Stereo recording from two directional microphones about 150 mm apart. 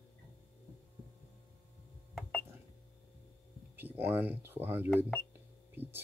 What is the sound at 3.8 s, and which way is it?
Speech, 15° right (ahead or behind).